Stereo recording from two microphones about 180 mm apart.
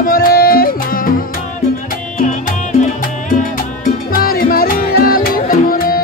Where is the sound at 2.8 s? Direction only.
50° left (ahead or behind).